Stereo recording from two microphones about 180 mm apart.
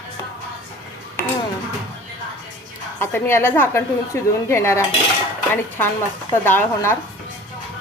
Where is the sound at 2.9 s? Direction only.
15° left (ahead or behind).